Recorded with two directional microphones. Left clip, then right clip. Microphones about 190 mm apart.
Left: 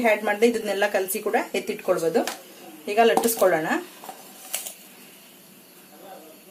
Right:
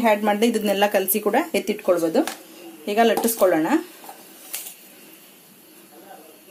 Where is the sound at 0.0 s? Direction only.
40° right (ahead or behind).